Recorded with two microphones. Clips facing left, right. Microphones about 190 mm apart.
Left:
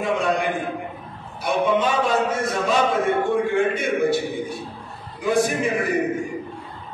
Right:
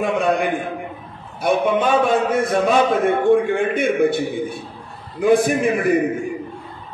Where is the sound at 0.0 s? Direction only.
55° right (ahead or behind).